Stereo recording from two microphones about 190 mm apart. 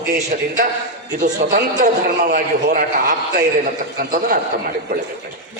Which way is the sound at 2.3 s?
45° right (ahead or behind).